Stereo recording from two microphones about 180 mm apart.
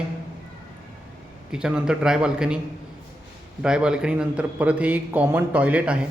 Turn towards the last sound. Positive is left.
turn(degrees=-5)  # may be behind; listen again after turning